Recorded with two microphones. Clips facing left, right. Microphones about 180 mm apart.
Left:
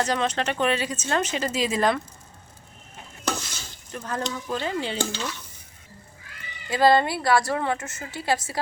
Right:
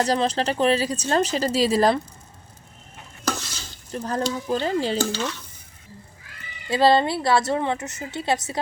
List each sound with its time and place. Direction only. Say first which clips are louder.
0.0 s speech: right 3 dB; 35° right (ahead or behind)
3.9 s speech: right 5 dB; 35° right (ahead or behind)
6.7 s a woman's voice: right 1 dB; 25° right (ahead or behind)